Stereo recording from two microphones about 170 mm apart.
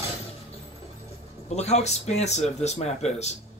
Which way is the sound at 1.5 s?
40° left (ahead or behind).